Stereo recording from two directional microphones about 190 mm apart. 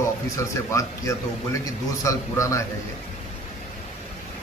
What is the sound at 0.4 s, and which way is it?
A man's voice, 15° left (ahead or behind).